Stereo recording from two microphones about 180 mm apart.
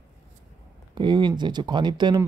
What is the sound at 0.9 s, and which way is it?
Speech, 25° right (ahead or behind).